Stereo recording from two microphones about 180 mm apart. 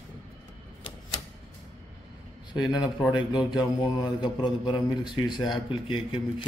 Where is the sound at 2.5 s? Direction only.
25° left (ahead or behind).